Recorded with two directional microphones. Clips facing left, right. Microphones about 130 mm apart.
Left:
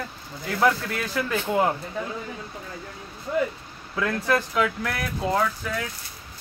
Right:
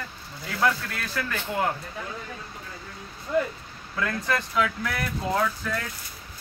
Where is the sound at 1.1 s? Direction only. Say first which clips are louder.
Left 5 dB; 20° left (ahead or behind).